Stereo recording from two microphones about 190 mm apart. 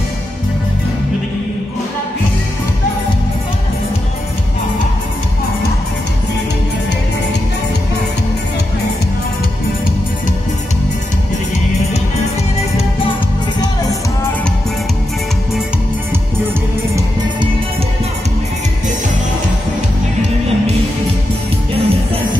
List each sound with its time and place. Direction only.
21.7 s music: 30° right (ahead or behind)